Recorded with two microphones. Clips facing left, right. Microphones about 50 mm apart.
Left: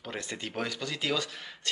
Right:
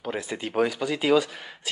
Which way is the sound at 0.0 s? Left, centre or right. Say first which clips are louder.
Right 7 dB; centre.